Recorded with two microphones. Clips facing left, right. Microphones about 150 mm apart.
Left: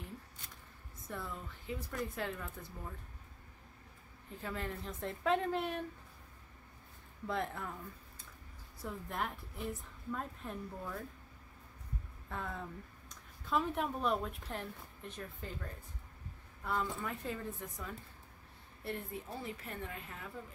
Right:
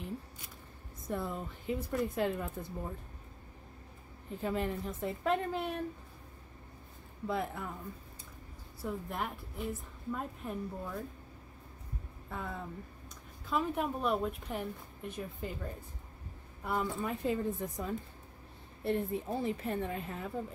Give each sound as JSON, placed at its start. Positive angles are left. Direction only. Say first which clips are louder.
{"t": 1.0, "sound": "a woman's voice", "louder": "right 7 dB", "side_deg": -25}
{"t": 2.3, "sound": "speech", "louder": "right 7 dB", "side_deg": -30}
{"t": 4.4, "sound": "a woman's voice", "louder": "right 7 dB", "side_deg": -20}
{"t": 5.0, "sound": "a woman's voice", "louder": "right 1 dB", "side_deg": -5}
{"t": 7.2, "sound": "a woman's voice", "louder": "right 3 dB", "side_deg": -5}
{"t": 8.8, "sound": "a woman's voice", "louder": "right 3 dB", "side_deg": -5}
{"t": 12.3, "sound": "a woman's voice", "louder": "right 2 dB", "side_deg": -5}
{"t": 18.9, "sound": "a woman's voice", "louder": "right 9 dB", "side_deg": -25}